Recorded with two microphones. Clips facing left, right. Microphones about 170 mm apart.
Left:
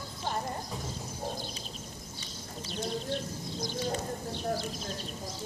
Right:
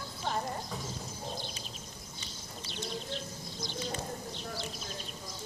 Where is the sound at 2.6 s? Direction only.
45° left (ahead or behind).